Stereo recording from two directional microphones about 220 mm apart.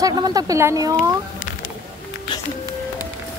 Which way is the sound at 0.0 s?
15° right (ahead or behind).